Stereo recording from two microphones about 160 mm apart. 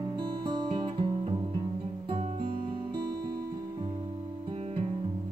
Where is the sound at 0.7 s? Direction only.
30° right (ahead or behind).